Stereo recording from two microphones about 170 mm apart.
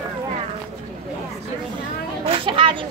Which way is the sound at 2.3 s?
30° right (ahead or behind).